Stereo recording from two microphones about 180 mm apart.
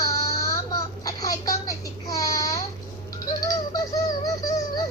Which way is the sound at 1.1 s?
20° left (ahead or behind).